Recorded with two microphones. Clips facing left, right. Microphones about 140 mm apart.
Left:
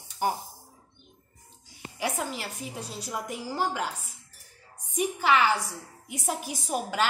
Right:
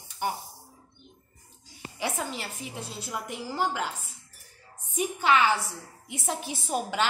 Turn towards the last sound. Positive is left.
turn(degrees=5)  # may be behind; listen again after turning